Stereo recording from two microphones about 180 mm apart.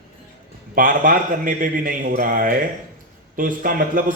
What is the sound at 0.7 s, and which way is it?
A man's voice, 50° right (ahead or behind).